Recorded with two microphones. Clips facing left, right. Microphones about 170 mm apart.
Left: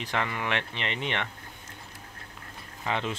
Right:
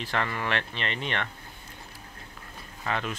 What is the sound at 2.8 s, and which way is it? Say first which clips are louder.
Speech: left 1 dB; 20° left (ahead or behind).